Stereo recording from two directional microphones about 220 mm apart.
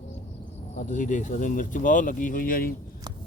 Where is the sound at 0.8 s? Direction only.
35° left (ahead or behind).